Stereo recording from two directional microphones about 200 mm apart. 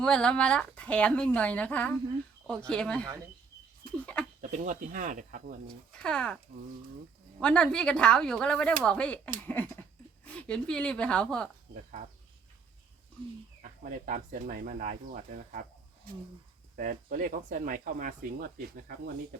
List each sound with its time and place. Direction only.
0.0 s speech: 5° left (ahead or behind)
4.4 s speech: 40° right (ahead or behind)
6.0 s speech: 5° left (ahead or behind)
9.4 s a sound: 10° left (ahead or behind)
10.2 s speech: 5° left (ahead or behind)
13.6 s speech: 40° right (ahead or behind)
16.7 s speech: 40° right (ahead or behind)